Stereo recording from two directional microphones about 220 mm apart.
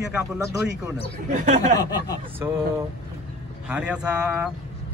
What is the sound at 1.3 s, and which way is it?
Speech, 35° right (ahead or behind).